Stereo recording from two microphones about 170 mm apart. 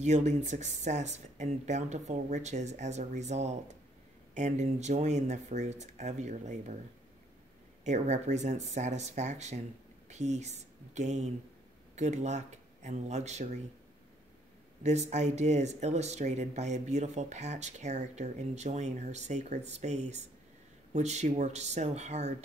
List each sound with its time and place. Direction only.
0.0 s speech: 45° right (ahead or behind)
7.8 s a woman's voice: 45° right (ahead or behind)
14.8 s speech: 40° right (ahead or behind)